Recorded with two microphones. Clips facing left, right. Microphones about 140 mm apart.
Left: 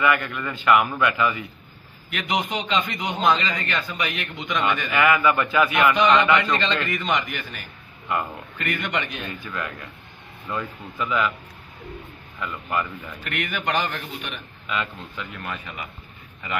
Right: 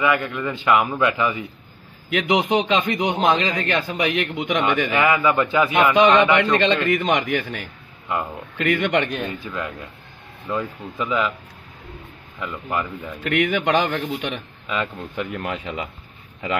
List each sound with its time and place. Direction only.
0.0 s a man's voice: 20° right (ahead or behind)
2.1 s speech: 80° right
4.9 s a man's voice: 25° right (ahead or behind)
6.9 s speech: 60° right (ahead or behind)
8.5 s speech: 85° right
9.2 s a man's voice: 25° right (ahead or behind)
12.4 s speech: 15° right (ahead or behind)
13.2 s a man's voice: 90° right
15.0 s speech: 70° right (ahead or behind); by 15.9 s 90° right